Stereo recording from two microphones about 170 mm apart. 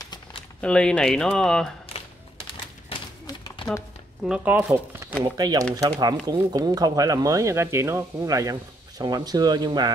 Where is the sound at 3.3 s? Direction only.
25° left (ahead or behind).